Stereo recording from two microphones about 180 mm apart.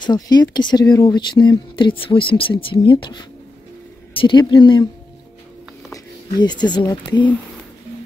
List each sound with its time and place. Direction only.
0.0 s speech: 25° left (ahead or behind)
5.9 s speech: 25° left (ahead or behind)